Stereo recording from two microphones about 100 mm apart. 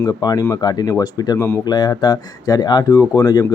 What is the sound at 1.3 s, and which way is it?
Speech, 25° left (ahead or behind).